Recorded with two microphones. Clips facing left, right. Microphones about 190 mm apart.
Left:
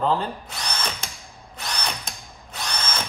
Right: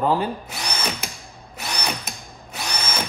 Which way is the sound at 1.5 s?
10° right (ahead or behind).